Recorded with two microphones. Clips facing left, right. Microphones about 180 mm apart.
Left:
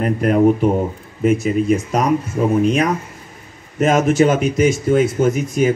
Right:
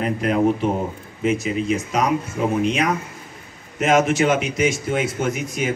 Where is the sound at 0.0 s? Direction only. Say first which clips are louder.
Left 5 dB; 50° left (ahead or behind).